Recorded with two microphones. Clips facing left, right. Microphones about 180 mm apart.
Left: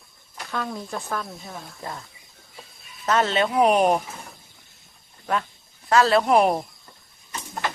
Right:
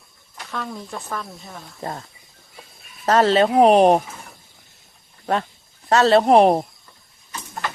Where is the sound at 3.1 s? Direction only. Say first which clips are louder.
Right 6 dB; 35° right (ahead or behind).